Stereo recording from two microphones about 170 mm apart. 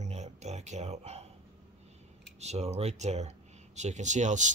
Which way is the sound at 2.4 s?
40° right (ahead or behind).